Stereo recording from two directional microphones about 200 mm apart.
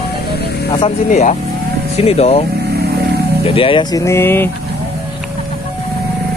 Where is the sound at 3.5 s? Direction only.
25° left (ahead or behind); by 4.5 s 10° left (ahead or behind).